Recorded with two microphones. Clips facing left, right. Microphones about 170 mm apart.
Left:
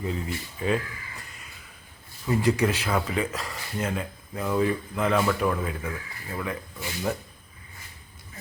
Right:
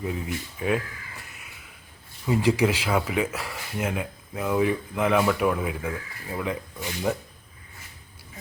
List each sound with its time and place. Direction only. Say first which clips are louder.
0.0 s speech: right 1 dB; 10° right (ahead or behind)
2.2 s speech: right 1 dB; 10° right (ahead or behind)